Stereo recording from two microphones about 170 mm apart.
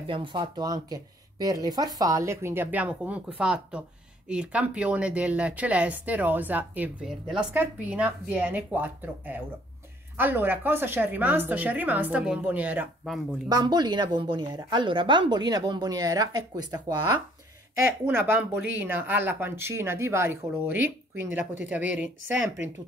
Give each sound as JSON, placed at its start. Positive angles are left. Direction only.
{"t": 0.0, "sound": "speech", "side_deg": -30}
{"t": 13.5, "sound": "speech", "side_deg": -25}
{"t": 18.0, "sound": "speech", "side_deg": -10}